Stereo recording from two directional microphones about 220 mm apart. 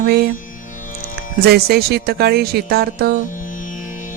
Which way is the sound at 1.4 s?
45° right (ahead or behind).